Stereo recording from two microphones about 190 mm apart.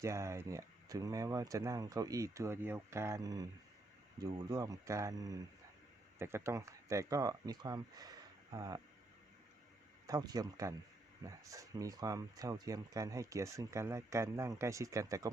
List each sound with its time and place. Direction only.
0.0 s speech: 15° right (ahead or behind)
10.1 s speech: 20° right (ahead or behind)